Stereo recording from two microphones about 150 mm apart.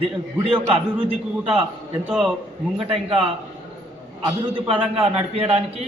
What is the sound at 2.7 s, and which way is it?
Speech, 35° right (ahead or behind).